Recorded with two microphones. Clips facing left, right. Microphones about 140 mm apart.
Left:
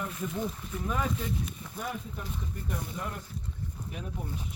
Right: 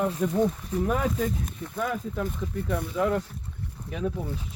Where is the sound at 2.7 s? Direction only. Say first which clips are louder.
Right 12 dB; 90° right.